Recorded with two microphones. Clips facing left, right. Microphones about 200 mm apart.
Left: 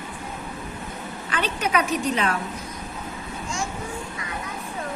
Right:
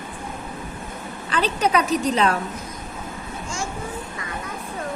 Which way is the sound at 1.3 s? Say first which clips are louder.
Right 5 dB; 35° right (ahead or behind).